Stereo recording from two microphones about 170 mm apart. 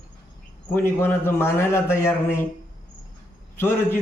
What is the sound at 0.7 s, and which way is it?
A man's voice, 15° left (ahead or behind).